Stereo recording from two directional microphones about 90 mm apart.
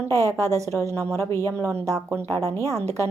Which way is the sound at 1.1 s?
30° left (ahead or behind).